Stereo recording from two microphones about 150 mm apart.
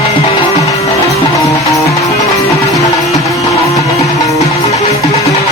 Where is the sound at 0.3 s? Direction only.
40° left (ahead or behind).